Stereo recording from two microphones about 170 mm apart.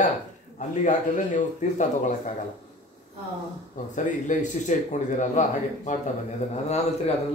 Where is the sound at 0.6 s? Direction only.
45° left (ahead or behind).